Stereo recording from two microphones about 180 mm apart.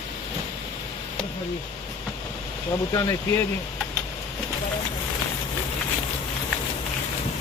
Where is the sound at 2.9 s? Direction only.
20° left (ahead or behind).